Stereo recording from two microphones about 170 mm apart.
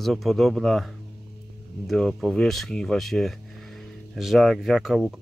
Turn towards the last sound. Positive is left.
turn(degrees=-5)  # may be behind; listen again after turning